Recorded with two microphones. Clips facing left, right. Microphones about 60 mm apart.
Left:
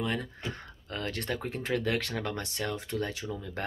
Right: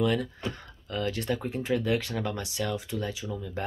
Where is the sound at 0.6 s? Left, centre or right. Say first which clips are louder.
Right 4 dB; left.